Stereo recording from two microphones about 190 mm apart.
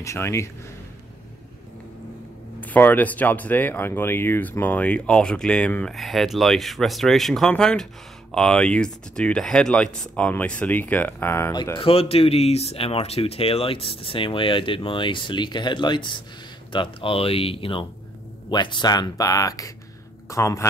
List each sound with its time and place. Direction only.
0.0 s speech: 15° left (ahead or behind)
2.6 s speech: 10° left (ahead or behind)
11.8 s speech: 30° left (ahead or behind); by 20.6 s 15° left (ahead or behind)